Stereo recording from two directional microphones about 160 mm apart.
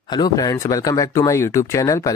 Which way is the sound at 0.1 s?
25° left (ahead or behind).